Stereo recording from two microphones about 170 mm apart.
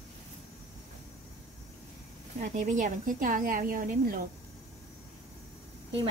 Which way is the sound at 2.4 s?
50° right (ahead or behind).